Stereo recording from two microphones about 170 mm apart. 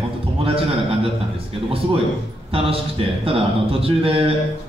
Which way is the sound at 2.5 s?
35° right (ahead or behind).